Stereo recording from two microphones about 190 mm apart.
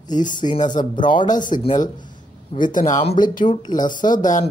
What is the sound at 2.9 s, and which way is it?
Speech, 25° left (ahead or behind).